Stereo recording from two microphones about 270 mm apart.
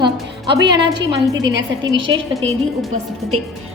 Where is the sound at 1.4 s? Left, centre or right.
Right.